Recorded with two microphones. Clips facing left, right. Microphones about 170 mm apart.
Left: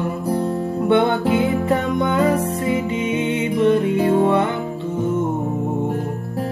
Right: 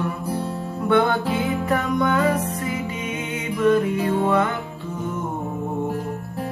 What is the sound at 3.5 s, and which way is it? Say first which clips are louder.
Music: left 1 dB; 25° left (ahead or behind).